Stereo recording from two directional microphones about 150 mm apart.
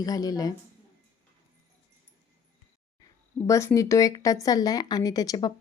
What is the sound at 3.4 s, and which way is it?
Speech, 20° left (ahead or behind).